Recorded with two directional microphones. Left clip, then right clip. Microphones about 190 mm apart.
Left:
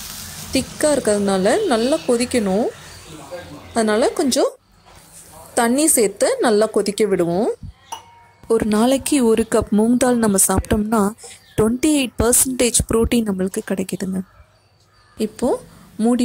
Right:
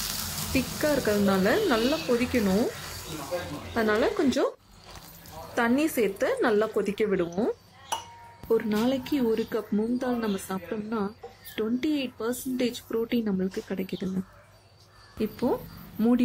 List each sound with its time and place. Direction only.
0.5 s a woman's voice: 35° left (ahead or behind)
3.7 s a woman's voice: 30° left (ahead or behind)
5.5 s a woman's voice: 35° left (ahead or behind)
8.5 s a woman's voice: 50° left (ahead or behind)
15.1 s a woman's voice: 35° left (ahead or behind)